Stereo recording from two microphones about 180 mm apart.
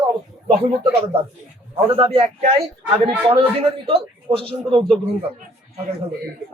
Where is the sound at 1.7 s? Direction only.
35° right (ahead or behind).